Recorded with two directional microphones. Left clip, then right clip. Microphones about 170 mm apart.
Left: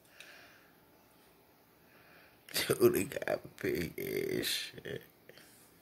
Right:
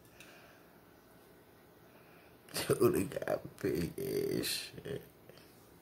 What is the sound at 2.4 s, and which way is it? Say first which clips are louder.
Speech: left 2 dB; 10° left (ahead or behind).